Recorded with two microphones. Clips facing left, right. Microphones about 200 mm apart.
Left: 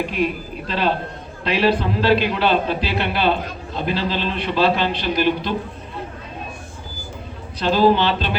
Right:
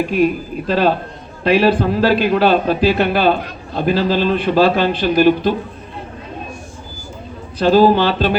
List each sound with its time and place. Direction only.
0.7 s a man's voice: 45° right (ahead or behind)
7.6 s a man's voice: 45° right (ahead or behind)